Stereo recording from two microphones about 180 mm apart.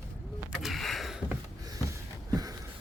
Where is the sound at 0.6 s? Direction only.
Centre (ahead or behind).